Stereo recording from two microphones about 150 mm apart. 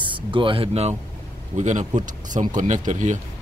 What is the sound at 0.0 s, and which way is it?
Speech, 35° right (ahead or behind).